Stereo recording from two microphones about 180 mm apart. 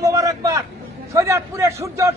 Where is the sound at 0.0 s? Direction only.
20° right (ahead or behind).